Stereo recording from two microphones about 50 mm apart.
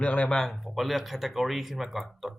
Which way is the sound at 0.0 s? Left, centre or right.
Left.